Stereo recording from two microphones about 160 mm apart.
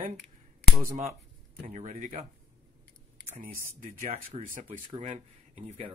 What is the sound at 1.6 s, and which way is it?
Speech, 45° right (ahead or behind).